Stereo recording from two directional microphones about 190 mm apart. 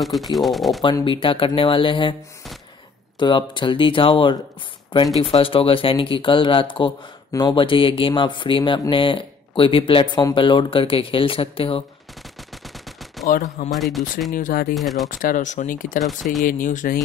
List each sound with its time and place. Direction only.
0.0 s speech: centre (ahead or behind)
0.8 s speech: 25° left (ahead or behind)
3.2 s speech: 25° left (ahead or behind)
13.3 s speech: 45° left (ahead or behind)
13.7 s speech: centre (ahead or behind)
14.3 s speech: 50° left (ahead or behind)
14.7 s speech: centre (ahead or behind)
15.0 s speech: 45° left (ahead or behind)